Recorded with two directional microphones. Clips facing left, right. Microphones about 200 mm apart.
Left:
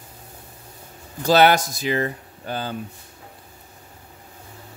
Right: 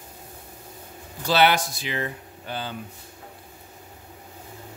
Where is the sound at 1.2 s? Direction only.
45° left (ahead or behind).